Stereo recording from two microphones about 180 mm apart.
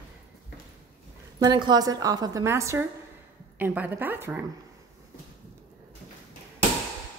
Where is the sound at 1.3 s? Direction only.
25° right (ahead or behind).